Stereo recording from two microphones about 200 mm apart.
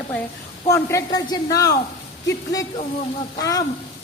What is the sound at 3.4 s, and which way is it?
Speech, 20° left (ahead or behind).